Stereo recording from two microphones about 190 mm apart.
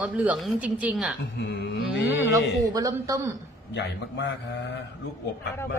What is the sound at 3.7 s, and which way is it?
A man's voice, 65° left (ahead or behind).